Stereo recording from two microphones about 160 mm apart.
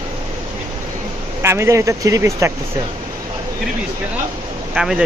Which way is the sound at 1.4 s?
15° right (ahead or behind).